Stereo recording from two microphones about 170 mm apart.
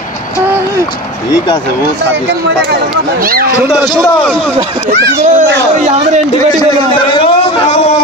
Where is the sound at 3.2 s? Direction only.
60° right (ahead or behind).